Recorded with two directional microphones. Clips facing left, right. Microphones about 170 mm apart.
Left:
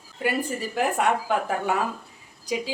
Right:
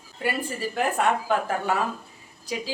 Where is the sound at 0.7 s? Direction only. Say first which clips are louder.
Even; 15° left (ahead or behind).